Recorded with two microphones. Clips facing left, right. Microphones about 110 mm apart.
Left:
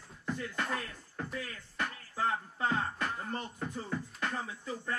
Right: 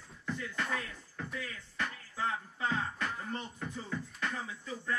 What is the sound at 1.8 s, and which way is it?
Music, 55° left (ahead or behind).